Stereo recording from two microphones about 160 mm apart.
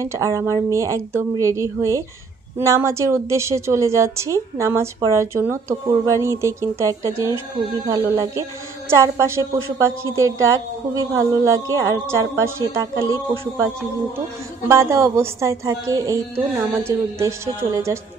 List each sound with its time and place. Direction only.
0.0 s a woman's voice: 20° right (ahead or behind)
14.7 s a woman's voice: 15° right (ahead or behind)